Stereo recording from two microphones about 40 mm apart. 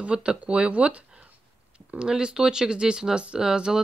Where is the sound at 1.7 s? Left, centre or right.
Centre.